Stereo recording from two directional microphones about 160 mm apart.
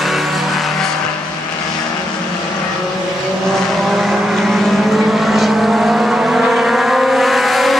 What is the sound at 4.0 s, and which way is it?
Vehicle, centre (ahead or behind).